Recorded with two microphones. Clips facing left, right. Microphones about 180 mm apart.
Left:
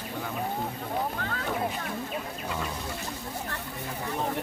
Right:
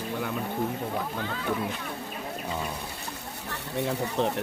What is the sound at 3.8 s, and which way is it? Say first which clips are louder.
Speech: right 7 dB; 75° right (ahead or behind).